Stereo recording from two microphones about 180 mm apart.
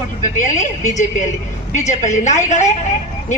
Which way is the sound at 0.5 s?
40° left (ahead or behind).